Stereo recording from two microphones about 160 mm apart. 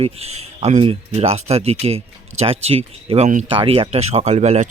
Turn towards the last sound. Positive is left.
turn(degrees=-45)  # may be behind; listen again after turning